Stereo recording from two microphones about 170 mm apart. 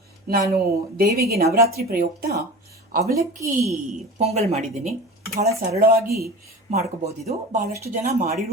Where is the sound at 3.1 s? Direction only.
20° right (ahead or behind).